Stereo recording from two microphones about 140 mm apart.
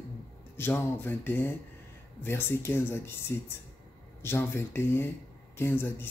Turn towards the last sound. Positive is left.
turn(degrees=15)  # may be behind; listen again after turning